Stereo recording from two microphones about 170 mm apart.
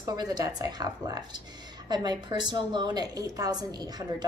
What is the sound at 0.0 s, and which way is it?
A woman's voice, 25° right (ahead or behind).